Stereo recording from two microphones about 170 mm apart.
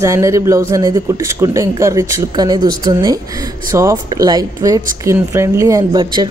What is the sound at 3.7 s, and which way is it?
Speech, 20° right (ahead or behind).